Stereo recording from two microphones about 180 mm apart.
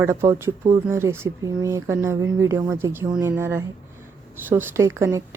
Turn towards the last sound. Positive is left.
turn(degrees=-15)  # may be behind; listen again after turning